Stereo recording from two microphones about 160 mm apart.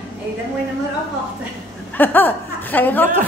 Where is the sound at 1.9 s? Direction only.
10° left (ahead or behind).